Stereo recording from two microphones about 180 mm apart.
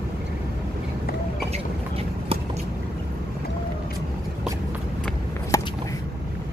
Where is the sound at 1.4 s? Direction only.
35° right (ahead or behind).